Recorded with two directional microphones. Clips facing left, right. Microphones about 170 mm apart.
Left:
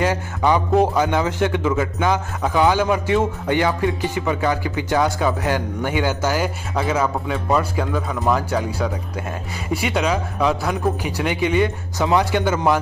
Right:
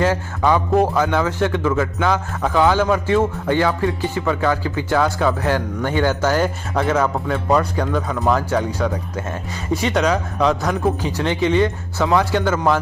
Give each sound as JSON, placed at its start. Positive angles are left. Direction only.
{"t": 0.0, "sound": "a man's voice", "side_deg": 15}